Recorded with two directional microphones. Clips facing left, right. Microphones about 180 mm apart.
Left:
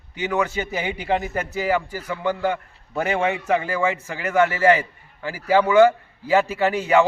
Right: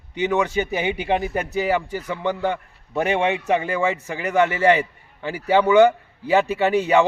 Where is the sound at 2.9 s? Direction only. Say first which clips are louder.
Right 2 dB; 20° right (ahead or behind).